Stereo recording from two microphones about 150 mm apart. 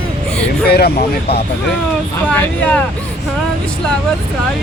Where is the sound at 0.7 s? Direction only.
90° left.